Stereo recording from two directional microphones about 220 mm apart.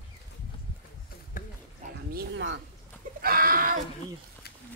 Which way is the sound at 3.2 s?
40° right (ahead or behind).